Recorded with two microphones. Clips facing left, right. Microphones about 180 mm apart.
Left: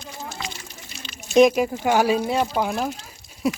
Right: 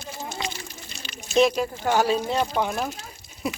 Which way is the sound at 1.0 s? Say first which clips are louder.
Even; centre (ahead or behind).